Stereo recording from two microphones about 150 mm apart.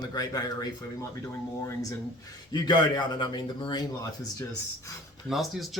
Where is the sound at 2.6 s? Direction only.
30° left (ahead or behind).